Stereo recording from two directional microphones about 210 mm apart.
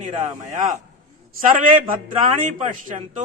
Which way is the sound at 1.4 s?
40° right (ahead or behind).